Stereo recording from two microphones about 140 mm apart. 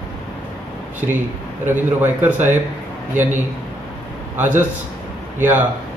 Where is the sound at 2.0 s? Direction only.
15° right (ahead or behind).